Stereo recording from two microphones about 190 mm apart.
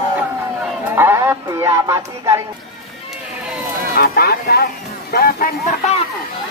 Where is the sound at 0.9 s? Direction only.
10° right (ahead or behind).